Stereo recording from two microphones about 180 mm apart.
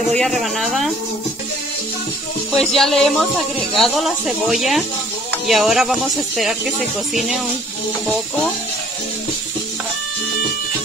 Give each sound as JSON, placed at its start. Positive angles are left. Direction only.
{"t": 0.1, "sound": "speech", "side_deg": 0}
{"t": 2.6, "sound": "speech", "side_deg": 0}